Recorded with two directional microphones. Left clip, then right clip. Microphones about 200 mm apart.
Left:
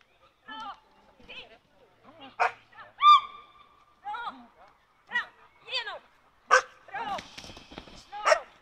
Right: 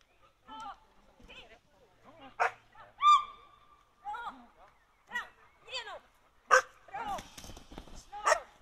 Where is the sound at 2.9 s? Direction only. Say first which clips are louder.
Left 6 dB; centre (ahead or behind).